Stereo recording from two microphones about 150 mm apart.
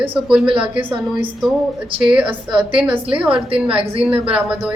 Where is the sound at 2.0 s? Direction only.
5° right (ahead or behind).